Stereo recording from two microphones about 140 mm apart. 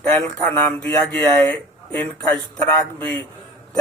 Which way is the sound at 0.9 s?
15° left (ahead or behind).